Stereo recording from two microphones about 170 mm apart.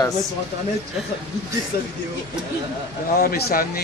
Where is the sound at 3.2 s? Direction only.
65° left (ahead or behind).